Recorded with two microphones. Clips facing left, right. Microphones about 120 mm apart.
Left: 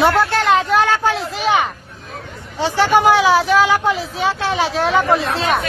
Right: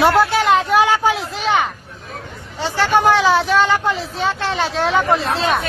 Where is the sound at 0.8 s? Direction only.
15° right (ahead or behind).